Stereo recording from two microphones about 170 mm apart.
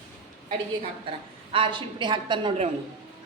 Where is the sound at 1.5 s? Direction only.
30° right (ahead or behind).